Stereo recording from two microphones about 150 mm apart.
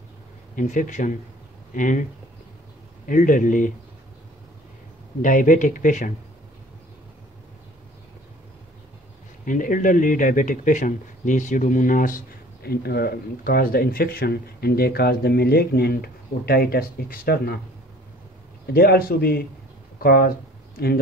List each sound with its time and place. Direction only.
0.6 s speech: 55° left (ahead or behind)
3.1 s speech: 60° left (ahead or behind)
5.2 s speech: 60° left (ahead or behind)
9.4 s speech: 65° left (ahead or behind)
12.6 s speech: 90° left
18.7 s speech: 90° left